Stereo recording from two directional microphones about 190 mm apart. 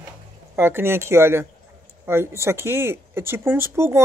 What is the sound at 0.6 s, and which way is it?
Speech, 10° right (ahead or behind).